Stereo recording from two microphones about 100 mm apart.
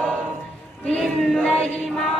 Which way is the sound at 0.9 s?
10° left (ahead or behind).